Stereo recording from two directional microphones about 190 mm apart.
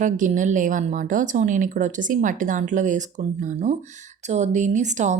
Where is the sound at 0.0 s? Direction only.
40° right (ahead or behind).